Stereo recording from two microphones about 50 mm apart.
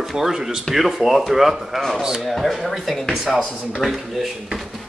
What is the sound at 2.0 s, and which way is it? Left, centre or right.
Speech, centre.